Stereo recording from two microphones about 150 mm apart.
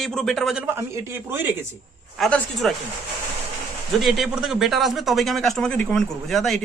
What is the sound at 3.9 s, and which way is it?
A man's voice, centre (ahead or behind).